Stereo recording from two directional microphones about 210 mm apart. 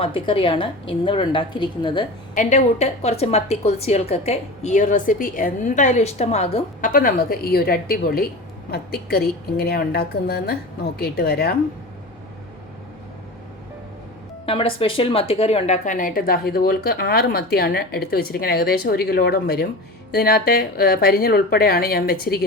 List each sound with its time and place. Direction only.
0.0 s a woman's voice: 25° left (ahead or behind)
2.3 s a woman's voice: 40° left (ahead or behind)
6.9 s a woman's voice: 45° left (ahead or behind)
14.4 s a woman's voice: 25° left (ahead or behind); by 22.4 s 45° left (ahead or behind)